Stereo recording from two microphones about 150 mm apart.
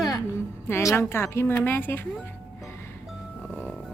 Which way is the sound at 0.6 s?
15° left (ahead or behind).